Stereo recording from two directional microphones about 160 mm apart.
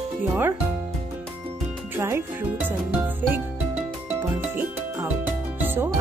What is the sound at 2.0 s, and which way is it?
Speech, 15° right (ahead or behind).